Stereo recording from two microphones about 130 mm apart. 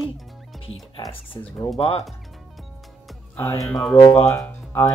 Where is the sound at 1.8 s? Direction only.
50° left (ahead or behind).